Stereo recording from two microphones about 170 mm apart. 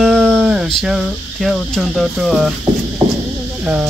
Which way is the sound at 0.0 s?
Centre (ahead or behind).